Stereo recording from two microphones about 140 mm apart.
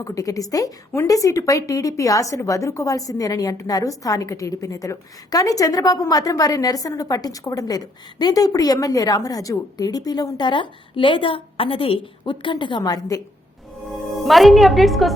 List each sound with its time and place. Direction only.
0.0 s a woman's voice: 25° left (ahead or behind)
14.3 s a woman's voice: centre (ahead or behind)